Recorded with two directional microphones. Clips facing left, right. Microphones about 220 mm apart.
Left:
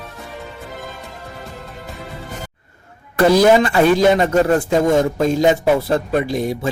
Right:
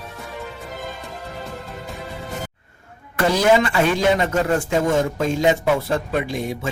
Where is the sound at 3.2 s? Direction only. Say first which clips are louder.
Left 5 dB; 35° left (ahead or behind).